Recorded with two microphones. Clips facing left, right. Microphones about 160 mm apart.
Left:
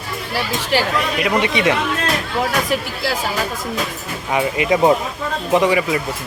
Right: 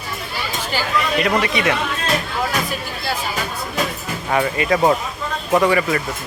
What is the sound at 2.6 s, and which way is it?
Speech, 90° left.